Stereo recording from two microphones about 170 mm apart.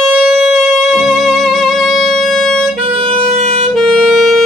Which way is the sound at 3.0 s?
35° right (ahead or behind).